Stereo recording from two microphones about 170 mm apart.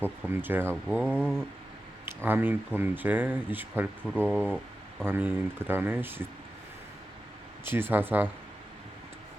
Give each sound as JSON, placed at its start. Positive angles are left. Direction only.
{"t": 0.0, "sound": "speech", "side_deg": -10}
{"t": 7.6, "sound": "speech", "side_deg": -10}